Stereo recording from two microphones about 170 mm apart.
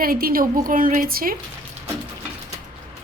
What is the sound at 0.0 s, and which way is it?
A woman's voice, 60° right (ahead or behind).